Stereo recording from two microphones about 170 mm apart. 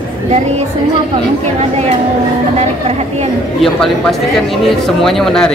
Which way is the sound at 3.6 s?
Centre (ahead or behind).